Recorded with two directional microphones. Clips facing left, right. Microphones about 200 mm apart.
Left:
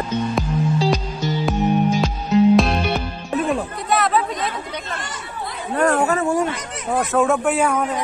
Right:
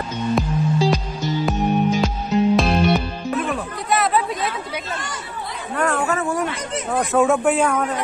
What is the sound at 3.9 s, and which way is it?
Chatter, centre (ahead or behind).